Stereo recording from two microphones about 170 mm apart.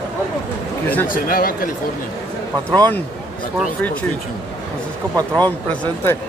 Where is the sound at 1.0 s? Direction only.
55° left (ahead or behind).